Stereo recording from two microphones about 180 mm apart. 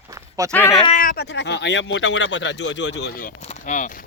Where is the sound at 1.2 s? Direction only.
75° left (ahead or behind).